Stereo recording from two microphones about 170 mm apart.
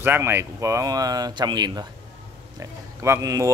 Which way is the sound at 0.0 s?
15° right (ahead or behind).